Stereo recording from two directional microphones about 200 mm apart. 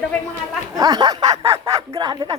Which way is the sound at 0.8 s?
20° right (ahead or behind).